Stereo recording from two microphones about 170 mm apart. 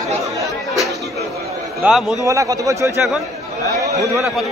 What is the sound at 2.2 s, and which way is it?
Speech, 20° right (ahead or behind).